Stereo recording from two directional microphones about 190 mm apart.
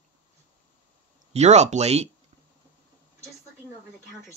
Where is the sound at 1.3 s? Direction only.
35° right (ahead or behind).